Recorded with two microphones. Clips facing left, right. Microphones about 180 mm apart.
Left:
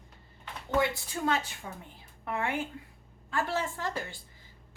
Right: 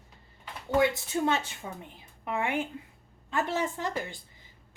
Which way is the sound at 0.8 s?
25° right (ahead or behind).